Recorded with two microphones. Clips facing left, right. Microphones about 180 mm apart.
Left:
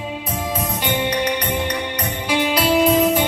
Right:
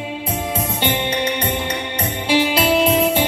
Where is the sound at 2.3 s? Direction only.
25° right (ahead or behind).